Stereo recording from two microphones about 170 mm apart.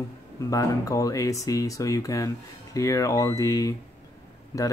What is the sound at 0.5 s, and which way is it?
Speech, 20° left (ahead or behind).